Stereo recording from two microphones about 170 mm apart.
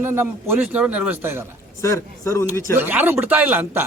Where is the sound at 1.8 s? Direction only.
15° left (ahead or behind).